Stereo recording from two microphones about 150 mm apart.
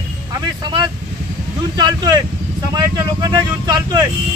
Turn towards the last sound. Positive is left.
turn(degrees=-30)  # may be behind; listen again after turning